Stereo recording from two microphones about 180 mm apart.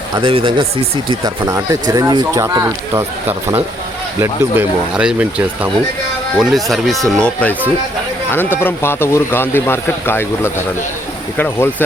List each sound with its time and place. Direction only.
0.1 s speech: 30° right (ahead or behind); by 11.7 s 10° left (ahead or behind)